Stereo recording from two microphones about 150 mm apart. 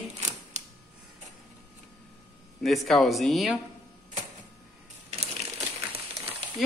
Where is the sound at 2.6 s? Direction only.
Centre (ahead or behind).